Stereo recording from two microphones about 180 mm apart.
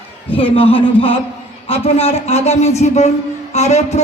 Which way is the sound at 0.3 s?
30° left (ahead or behind).